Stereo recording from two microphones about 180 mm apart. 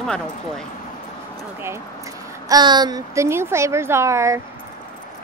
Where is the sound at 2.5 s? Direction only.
25° right (ahead or behind).